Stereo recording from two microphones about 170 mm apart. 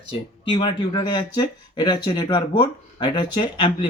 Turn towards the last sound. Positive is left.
turn(degrees=30)  # may be behind; listen again after turning